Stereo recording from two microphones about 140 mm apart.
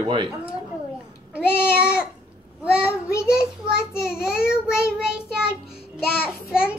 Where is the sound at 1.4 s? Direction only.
15° left (ahead or behind).